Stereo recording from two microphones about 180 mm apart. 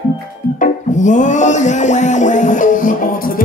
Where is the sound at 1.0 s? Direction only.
45° left (ahead or behind).